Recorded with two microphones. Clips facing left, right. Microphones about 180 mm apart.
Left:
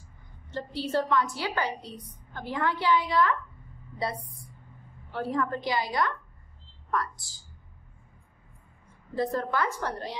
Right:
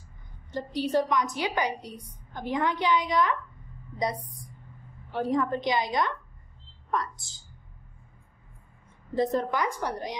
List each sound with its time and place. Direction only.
0.5 s a woman's voice: 15° right (ahead or behind)
9.1 s a woman's voice: 20° right (ahead or behind)